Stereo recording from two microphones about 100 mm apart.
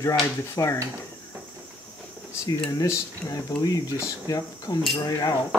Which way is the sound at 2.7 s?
35° left (ahead or behind).